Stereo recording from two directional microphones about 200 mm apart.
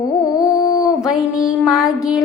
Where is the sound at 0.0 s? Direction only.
15° left (ahead or behind).